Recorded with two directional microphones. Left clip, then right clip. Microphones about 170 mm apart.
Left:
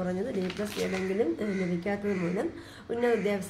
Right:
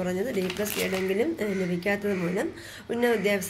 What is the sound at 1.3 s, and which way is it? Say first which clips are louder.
A woman's voice: right 3 dB; 10° right (ahead or behind).